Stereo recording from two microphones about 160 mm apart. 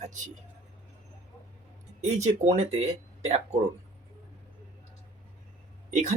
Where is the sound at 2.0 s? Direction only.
45° right (ahead or behind).